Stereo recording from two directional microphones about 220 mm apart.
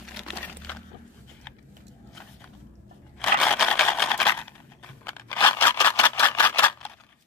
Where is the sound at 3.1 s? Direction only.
Centre (ahead or behind).